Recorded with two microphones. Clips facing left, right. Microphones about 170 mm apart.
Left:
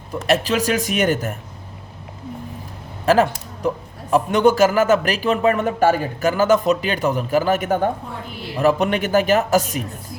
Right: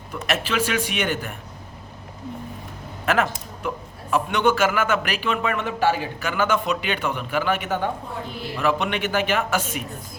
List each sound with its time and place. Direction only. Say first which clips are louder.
0.1 s a man's voice: left 6 dB; 40° left (ahead or behind)
3.1 s a man's voice: left 6 dB; 35° left (ahead or behind)